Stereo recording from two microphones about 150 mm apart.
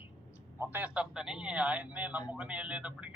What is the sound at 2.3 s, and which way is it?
Speech, 10° right (ahead or behind).